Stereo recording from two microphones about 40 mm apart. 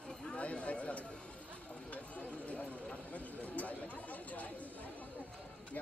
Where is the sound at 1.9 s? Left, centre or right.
Left.